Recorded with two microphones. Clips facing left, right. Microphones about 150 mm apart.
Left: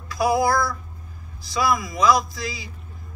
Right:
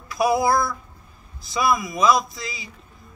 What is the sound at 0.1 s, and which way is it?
A man's voice, 25° right (ahead or behind).